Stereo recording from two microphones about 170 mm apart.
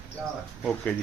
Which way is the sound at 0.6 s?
5° left (ahead or behind).